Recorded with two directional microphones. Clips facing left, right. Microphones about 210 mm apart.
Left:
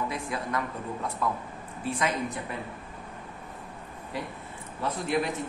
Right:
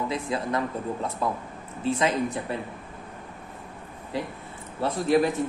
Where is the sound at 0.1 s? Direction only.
30° right (ahead or behind).